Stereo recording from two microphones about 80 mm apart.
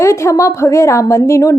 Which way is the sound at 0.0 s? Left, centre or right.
Left.